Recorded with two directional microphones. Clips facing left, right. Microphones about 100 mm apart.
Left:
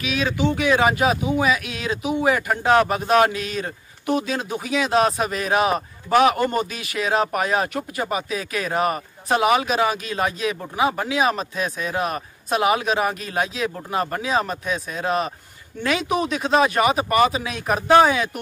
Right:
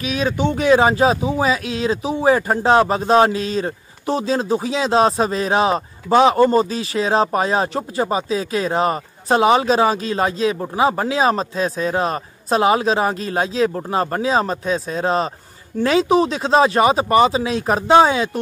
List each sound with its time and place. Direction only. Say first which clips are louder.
0.0 s speech: right 2 dB; 35° right (ahead or behind)